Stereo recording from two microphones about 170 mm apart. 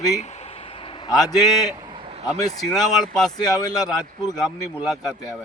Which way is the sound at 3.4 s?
25° left (ahead or behind).